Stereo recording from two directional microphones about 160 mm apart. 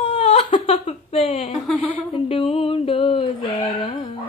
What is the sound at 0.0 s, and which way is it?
Whimper, 40° left (ahead or behind).